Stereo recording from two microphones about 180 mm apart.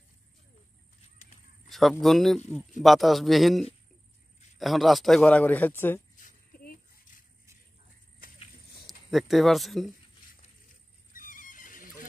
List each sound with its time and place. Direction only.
1.1 s horse: 45° left (ahead or behind)
1.7 s a man's voice: centre (ahead or behind)
6.1 s rattle: 50° left (ahead or behind)
8.8 s speech: centre (ahead or behind)
11.1 s horse: 50° left (ahead or behind)